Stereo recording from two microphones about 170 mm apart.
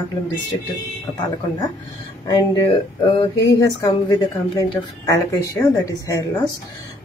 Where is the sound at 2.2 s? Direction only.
20° left (ahead or behind).